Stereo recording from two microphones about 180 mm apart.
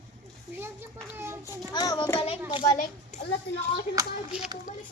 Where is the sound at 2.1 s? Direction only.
35° left (ahead or behind).